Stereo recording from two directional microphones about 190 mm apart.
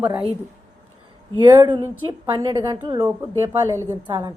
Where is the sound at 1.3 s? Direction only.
25° right (ahead or behind).